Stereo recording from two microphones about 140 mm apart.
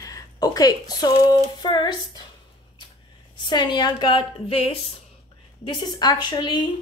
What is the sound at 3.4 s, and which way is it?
A woman's voice, 35° left (ahead or behind).